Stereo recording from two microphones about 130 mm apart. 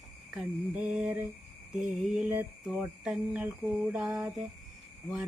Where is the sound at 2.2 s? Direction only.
15° right (ahead or behind).